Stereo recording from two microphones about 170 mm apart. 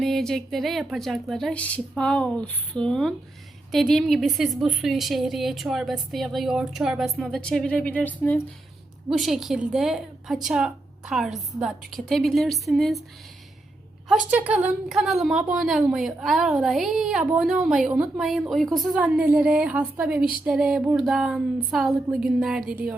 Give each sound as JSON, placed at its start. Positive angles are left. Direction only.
{"t": 0.0, "sound": "a woman's voice", "side_deg": 5}
{"t": 9.0, "sound": "a woman's voice", "side_deg": 0}
{"t": 14.1, "sound": "a woman's voice", "side_deg": -10}